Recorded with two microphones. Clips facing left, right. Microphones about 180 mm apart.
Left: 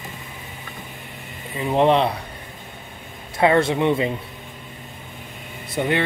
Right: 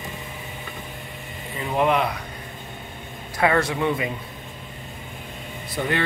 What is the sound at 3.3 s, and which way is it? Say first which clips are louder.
Speech: left 4 dB; 25° left (ahead or behind).